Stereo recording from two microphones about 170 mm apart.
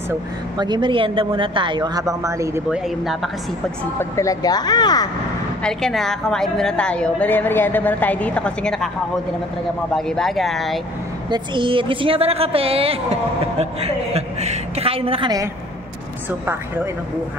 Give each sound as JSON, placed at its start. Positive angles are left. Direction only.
{"t": 0.6, "sound": "a woman's voice", "side_deg": -25}
{"t": 2.7, "sound": "a woman's voice", "side_deg": 0}
{"t": 4.0, "sound": "speech", "side_deg": 20}
{"t": 5.6, "sound": "a woman's voice", "side_deg": 5}
{"t": 9.9, "sound": "a woman's voice", "side_deg": 0}
{"t": 11.2, "sound": "a woman's voice", "side_deg": -30}
{"t": 16.3, "sound": "a woman's voice", "side_deg": -10}